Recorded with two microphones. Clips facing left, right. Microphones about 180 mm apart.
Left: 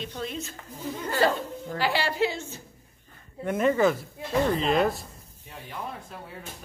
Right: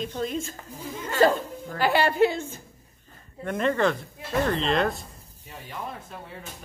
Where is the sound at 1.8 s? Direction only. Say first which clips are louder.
Right 5 dB; 55° right (ahead or behind).